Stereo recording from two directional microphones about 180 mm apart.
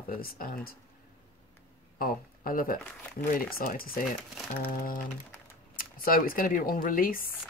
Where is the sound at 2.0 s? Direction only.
50° left (ahead or behind).